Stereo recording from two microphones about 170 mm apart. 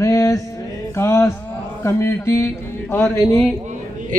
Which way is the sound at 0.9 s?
15° left (ahead or behind).